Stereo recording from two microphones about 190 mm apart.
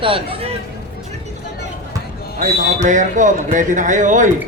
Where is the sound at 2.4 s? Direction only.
40° right (ahead or behind).